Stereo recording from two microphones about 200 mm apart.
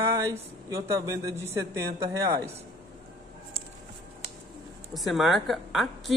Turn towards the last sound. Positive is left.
turn(degrees=0)  # may be behind; listen again after turning